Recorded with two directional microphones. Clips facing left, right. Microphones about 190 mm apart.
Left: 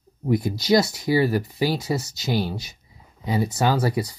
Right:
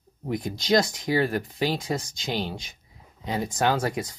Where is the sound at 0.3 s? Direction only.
10° left (ahead or behind).